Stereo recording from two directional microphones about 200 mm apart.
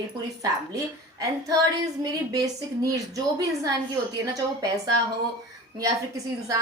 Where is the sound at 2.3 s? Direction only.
20° right (ahead or behind).